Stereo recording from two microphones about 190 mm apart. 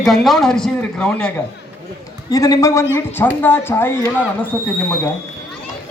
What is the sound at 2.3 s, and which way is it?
Speech, 20° left (ahead or behind).